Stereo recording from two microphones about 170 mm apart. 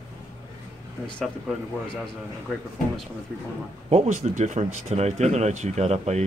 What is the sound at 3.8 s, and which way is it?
Speech, 40° right (ahead or behind).